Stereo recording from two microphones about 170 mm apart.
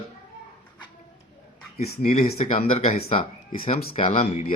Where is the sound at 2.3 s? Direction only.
40° left (ahead or behind).